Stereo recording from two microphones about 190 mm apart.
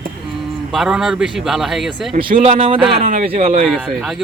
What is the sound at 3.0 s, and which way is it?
Speech, 45° right (ahead or behind).